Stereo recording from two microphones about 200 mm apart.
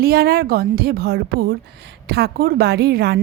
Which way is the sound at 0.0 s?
50° right (ahead or behind).